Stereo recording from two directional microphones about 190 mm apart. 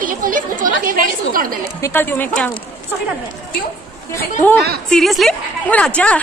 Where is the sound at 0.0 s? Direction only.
45° right (ahead or behind).